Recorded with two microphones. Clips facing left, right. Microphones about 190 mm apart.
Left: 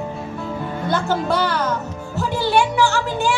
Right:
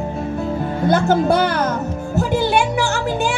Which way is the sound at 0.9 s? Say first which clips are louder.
Right 5 dB; 45° right (ahead or behind).